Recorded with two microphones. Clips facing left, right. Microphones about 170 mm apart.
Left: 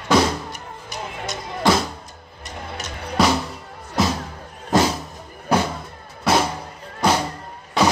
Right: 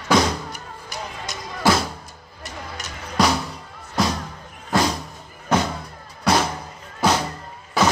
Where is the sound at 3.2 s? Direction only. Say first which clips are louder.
Left 1 dB; 5° left (ahead or behind).